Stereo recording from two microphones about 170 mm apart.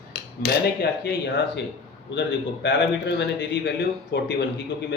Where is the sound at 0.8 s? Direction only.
70° left (ahead or behind).